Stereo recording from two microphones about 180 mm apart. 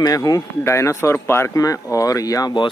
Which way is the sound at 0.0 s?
20° left (ahead or behind).